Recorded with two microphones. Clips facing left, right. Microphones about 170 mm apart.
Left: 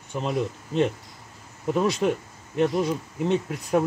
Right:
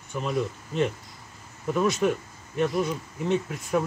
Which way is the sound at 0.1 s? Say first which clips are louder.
Left 1 dB; 30° left (ahead or behind).